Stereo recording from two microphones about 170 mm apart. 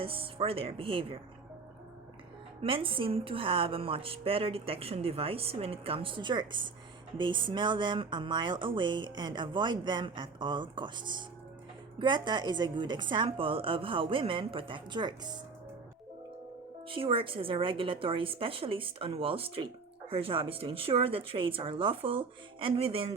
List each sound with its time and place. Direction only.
0.0 s a woman's voice: 30° right (ahead or behind)
2.6 s a woman's voice: 30° right (ahead or behind)
16.9 s a woman's voice: 30° right (ahead or behind)